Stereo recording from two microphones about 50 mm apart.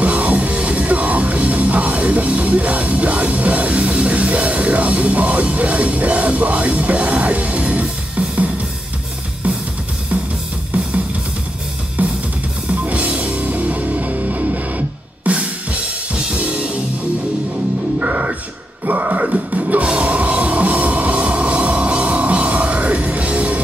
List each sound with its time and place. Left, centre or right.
0.0 s music: right
12.0 s drum kit: right
12.8 s music: right
15.3 s drum kit: right
16.3 s music: right
17.9 s music: right
18.9 s throat clearing: right
19.2 s music: right